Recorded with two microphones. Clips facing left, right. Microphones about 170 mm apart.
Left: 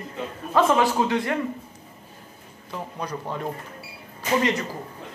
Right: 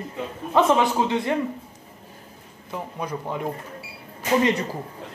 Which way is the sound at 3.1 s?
15° right (ahead or behind).